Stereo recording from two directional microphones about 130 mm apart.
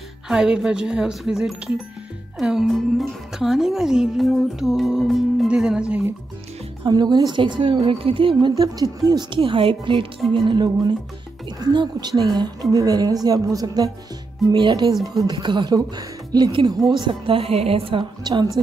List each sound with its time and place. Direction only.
0.3 s a woman's voice: 5° right (ahead or behind)
6.8 s a woman's voice: 35° right (ahead or behind)
9.4 s a woman's voice: 45° right (ahead or behind); by 13.9 s 25° right (ahead or behind)
14.5 s a woman's voice: 40° right (ahead or behind)